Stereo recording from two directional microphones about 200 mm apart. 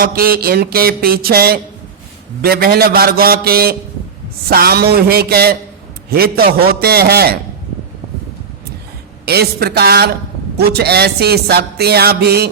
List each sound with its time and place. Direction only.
0.0 s music: 50° right (ahead or behind)
9.2 s music: 55° right (ahead or behind)